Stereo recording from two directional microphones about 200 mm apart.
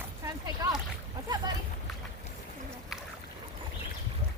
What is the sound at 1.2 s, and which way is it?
Boat, 20° right (ahead or behind).